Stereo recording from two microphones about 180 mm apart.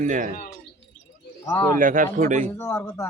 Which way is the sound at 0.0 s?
45° right (ahead or behind).